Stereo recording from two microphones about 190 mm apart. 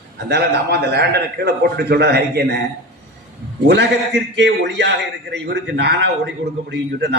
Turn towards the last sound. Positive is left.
turn(degrees=-65)  # may be behind; listen again after turning